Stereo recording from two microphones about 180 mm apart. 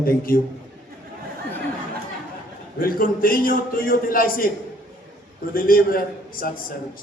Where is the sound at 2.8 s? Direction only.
55° left (ahead or behind).